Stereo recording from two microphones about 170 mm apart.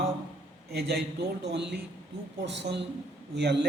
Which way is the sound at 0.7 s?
75° right (ahead or behind).